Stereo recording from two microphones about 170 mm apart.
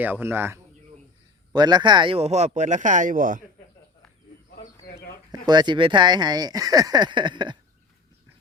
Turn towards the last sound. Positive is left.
turn(degrees=-25)  # may be behind; listen again after turning